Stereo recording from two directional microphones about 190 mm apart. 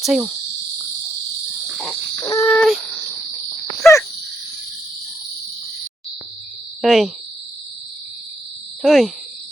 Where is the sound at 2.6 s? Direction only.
Centre (ahead or behind).